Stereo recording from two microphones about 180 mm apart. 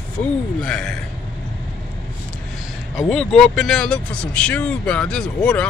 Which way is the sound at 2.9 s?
Centre (ahead or behind).